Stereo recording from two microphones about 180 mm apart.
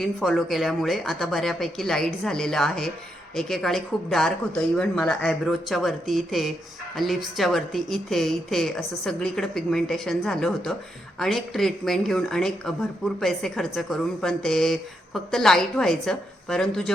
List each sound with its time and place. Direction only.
0.0 s a woman's voice: centre (ahead or behind)